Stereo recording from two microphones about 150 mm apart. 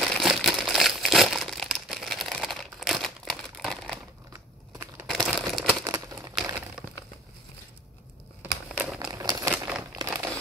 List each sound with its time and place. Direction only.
0.0 s crumpling: centre (ahead or behind)
4.3 s crumpling: 20° right (ahead or behind)
5.0 s crumpling: 5° left (ahead or behind)
5.9 s crumpling: 25° right (ahead or behind)
8.4 s crumpling: 5° right (ahead or behind)
9.0 s a sound: 25° right (ahead or behind)